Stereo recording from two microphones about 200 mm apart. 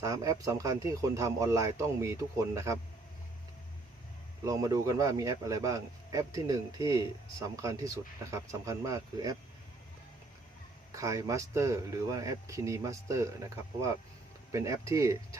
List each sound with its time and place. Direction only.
0.0 s a man's voice: 15° right (ahead or behind)
4.4 s a man's voice: 15° right (ahead or behind)
10.9 s a man's voice: 15° right (ahead or behind)